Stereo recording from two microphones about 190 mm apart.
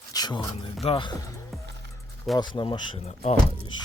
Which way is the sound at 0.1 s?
20° left (ahead or behind).